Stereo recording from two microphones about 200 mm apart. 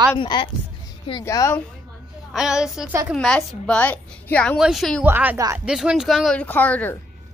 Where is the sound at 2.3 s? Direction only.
5° right (ahead or behind).